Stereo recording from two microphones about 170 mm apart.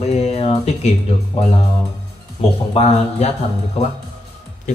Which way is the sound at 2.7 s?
35° left (ahead or behind).